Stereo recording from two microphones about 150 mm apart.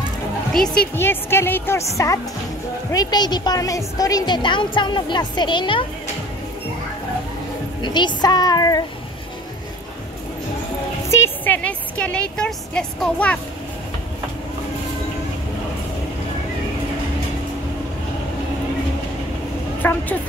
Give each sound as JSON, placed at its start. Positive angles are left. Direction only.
{"t": 0.5, "sound": "speech", "side_deg": 5}
{"t": 0.9, "sound": "speech", "side_deg": 15}
{"t": 2.9, "sound": "a woman's voice", "side_deg": 25}
{"t": 7.8, "sound": "a woman's voice", "side_deg": 30}
{"t": 11.1, "sound": "a woman's voice", "side_deg": 15}
{"t": 19.8, "sound": "a woman's voice", "side_deg": 15}